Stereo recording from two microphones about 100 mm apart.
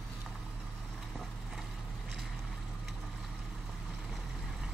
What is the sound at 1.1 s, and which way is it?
Vehicle, 5° left (ahead or behind).